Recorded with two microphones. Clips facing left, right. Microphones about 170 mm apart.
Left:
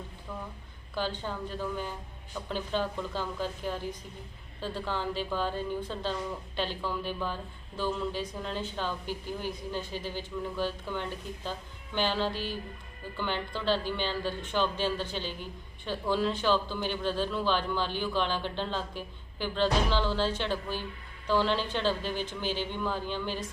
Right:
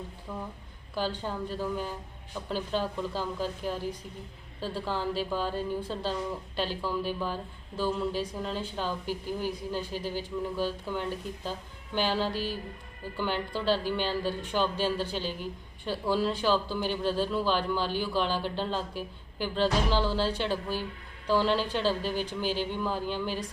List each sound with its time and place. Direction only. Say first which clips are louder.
0.3 s speech: right 2 dB; 10° right (ahead or behind)
12.3 s speech: right 3 dB; 40° right (ahead or behind)
13.1 s speech: right 2 dB; 10° right (ahead or behind)
15.2 s a woman's voice: right 3 dB; 40° right (ahead or behind)
15.9 s a woman's voice: right 1 dB; 10° right (ahead or behind)